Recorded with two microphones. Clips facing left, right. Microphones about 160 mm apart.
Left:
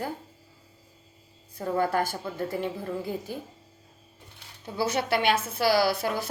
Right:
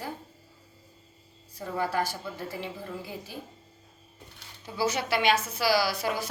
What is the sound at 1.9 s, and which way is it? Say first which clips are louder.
Speech: left 2 dB; 50° left (ahead or behind).